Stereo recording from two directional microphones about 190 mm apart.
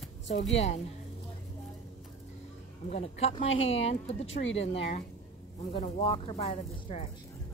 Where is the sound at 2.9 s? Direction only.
35° left (ahead or behind).